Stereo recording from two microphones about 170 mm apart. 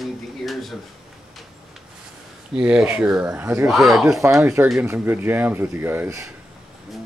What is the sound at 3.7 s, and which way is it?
Speech, centre (ahead or behind).